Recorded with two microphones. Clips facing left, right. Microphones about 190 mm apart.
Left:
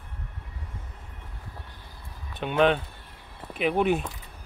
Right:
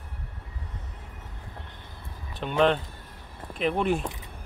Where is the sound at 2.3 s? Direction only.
5° left (ahead or behind).